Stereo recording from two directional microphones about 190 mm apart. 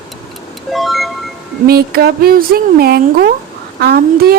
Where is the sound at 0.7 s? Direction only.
Centre (ahead or behind).